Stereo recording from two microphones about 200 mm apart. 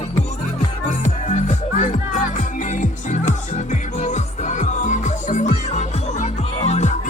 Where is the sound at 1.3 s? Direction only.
40° left (ahead or behind).